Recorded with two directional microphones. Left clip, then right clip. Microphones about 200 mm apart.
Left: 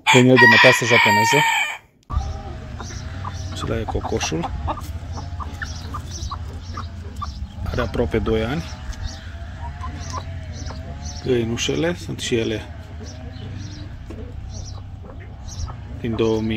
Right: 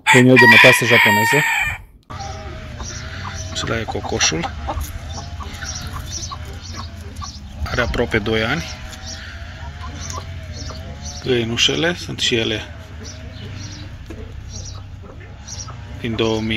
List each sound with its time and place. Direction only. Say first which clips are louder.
0.0 s chicken: right 2 dB; 20° right (ahead or behind)
3.5 s speech: right 3 dB; 5° left (ahead or behind)
7.6 s speech: right 4 dB; 5° left (ahead or behind)
11.2 s speech: right 4 dB; 5° left (ahead or behind)
16.0 s speech: right 1 dB; 5° left (ahead or behind)